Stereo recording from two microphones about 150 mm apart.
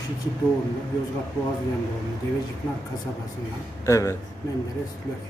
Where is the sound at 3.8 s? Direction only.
20° left (ahead or behind).